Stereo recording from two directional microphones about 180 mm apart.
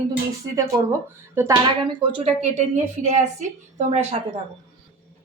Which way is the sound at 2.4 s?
40° right (ahead or behind).